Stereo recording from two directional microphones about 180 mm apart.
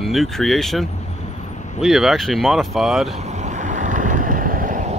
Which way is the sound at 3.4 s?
45° right (ahead or behind).